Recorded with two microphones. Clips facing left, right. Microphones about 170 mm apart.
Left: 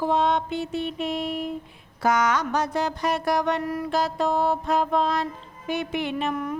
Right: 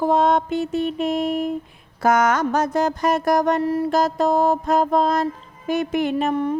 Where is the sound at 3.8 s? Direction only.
45° right (ahead or behind).